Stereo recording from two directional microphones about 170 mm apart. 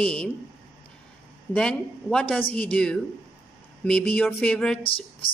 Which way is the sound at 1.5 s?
5° left (ahead or behind).